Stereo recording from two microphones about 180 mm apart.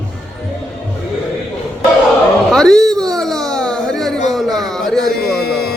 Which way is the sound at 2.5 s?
5° left (ahead or behind).